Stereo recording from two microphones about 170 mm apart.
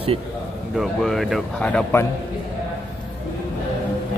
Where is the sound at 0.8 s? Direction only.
Centre (ahead or behind).